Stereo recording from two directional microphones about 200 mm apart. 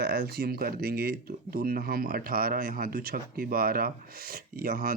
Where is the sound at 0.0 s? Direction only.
50° right (ahead or behind).